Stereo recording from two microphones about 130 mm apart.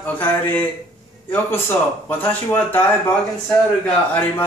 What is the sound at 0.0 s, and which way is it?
Speech, 10° left (ahead or behind).